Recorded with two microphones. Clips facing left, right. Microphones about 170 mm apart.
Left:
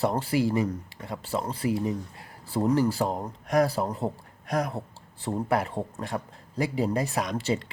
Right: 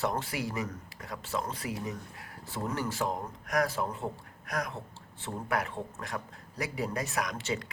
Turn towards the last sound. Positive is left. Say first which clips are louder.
# left 5 dB
turn(degrees=30)  # may be behind; listen again after turning